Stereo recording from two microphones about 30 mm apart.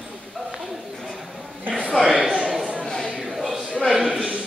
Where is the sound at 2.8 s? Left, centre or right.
Left.